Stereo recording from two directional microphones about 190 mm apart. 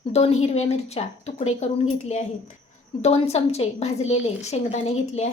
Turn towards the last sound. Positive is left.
turn(degrees=35)  # may be behind; listen again after turning